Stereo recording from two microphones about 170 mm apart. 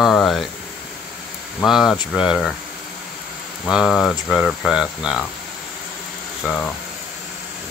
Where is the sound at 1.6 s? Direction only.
Centre (ahead or behind).